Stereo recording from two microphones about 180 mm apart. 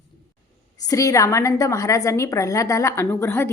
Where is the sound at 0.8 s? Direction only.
20° left (ahead or behind).